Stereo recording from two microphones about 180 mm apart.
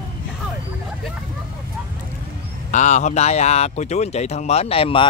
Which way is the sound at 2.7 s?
40° left (ahead or behind).